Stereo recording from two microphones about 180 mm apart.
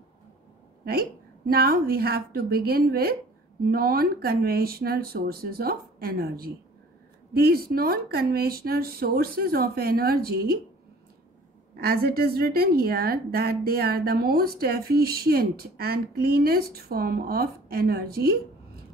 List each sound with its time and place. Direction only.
0.8 s a woman's voice: 55° right (ahead or behind)
11.7 s a woman's voice: 60° right (ahead or behind)